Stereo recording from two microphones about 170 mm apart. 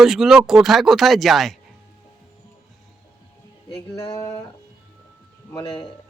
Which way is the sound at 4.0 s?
20° left (ahead or behind).